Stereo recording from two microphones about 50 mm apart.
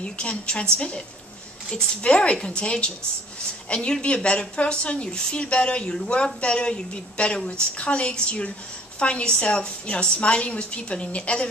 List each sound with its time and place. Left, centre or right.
0.0 s a woman's voice: left